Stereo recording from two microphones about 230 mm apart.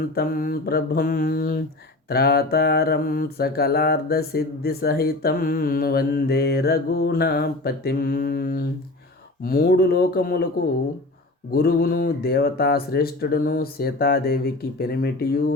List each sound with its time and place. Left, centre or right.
0.2 s speech: left
2.0 s mantra: left
9.4 s speech: left
11.5 s speech: left